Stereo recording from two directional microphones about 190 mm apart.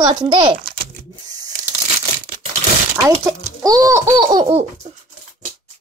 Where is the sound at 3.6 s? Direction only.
15° right (ahead or behind).